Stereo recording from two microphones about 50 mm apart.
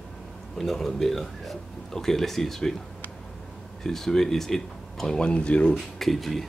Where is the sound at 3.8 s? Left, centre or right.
Centre.